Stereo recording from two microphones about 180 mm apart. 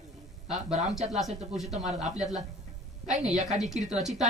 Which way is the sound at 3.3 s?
45° right (ahead or behind).